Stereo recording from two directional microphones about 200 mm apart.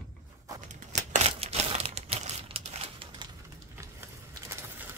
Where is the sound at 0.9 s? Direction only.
35° right (ahead or behind).